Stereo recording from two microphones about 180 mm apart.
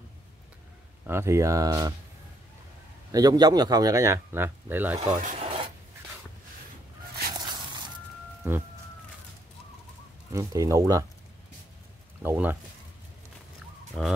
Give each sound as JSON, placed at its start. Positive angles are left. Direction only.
{"t": 1.0, "sound": "speech", "side_deg": -15}
{"t": 3.1, "sound": "a man's voice", "side_deg": -20}
{"t": 5.0, "sound": "filing", "side_deg": -40}
{"t": 8.4, "sound": "speech", "side_deg": -10}
{"t": 10.3, "sound": "a man's voice", "side_deg": -20}
{"t": 12.2, "sound": "speech", "side_deg": -10}
{"t": 14.0, "sound": "speech", "side_deg": 5}